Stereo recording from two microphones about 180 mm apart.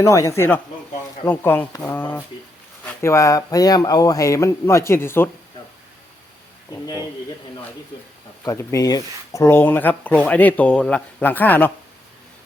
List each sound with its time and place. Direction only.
0.0 s speech: 15° left (ahead or behind)
6.7 s speech: 20° left (ahead or behind)
8.4 s speech: 20° left (ahead or behind)